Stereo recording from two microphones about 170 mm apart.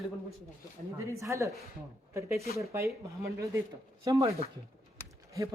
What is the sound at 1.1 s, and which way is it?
Speech, 20° right (ahead or behind).